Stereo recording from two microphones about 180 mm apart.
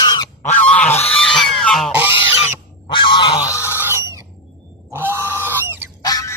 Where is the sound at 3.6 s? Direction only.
10° right (ahead or behind).